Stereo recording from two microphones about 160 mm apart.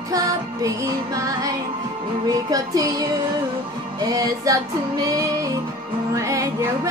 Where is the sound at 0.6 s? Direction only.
20° right (ahead or behind).